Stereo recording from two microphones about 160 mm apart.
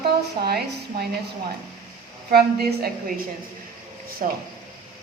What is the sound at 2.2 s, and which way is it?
Speech, 80° right.